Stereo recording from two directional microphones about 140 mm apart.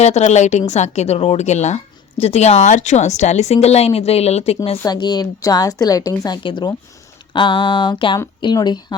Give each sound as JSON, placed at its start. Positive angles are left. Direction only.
{"t": 0.0, "sound": "a woman's voice", "side_deg": 55}
{"t": 4.9, "sound": "a woman's voice", "side_deg": 30}
{"t": 7.3, "sound": "a sound", "side_deg": 35}